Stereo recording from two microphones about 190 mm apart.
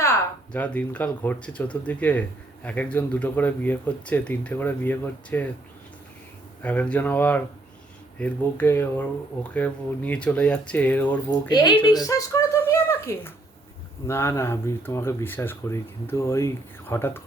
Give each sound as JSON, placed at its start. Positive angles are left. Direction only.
{"t": 0.0, "sound": "speech", "side_deg": 10}
{"t": 6.6, "sound": "speech", "side_deg": 10}
{"t": 11.3, "sound": "speech", "side_deg": 20}